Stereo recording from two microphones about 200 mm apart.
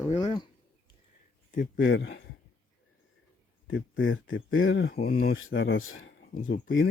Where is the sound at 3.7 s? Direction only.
70° left (ahead or behind).